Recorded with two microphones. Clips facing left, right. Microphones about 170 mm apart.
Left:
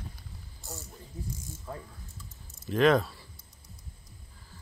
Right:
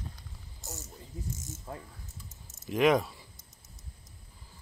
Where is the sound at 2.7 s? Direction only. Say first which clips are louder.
Left 2 dB; 15° right (ahead or behind).